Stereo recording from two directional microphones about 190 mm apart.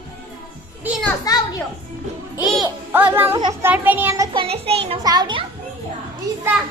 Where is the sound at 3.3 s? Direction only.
20° right (ahead or behind).